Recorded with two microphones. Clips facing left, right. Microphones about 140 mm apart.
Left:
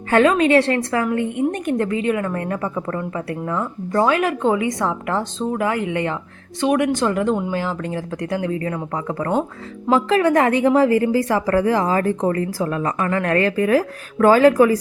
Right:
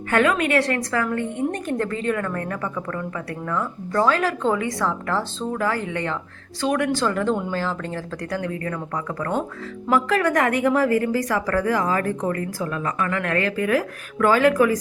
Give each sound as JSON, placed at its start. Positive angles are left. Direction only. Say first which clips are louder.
{"t": 0.1, "sound": "a woman's voice", "louder": "left 5 dB", "side_deg": 30}
{"t": 8.1, "sound": "a woman's voice", "louder": "left 5 dB", "side_deg": 20}